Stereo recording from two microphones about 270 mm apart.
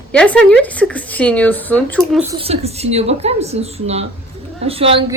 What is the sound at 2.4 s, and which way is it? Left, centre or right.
A woman's voice, right.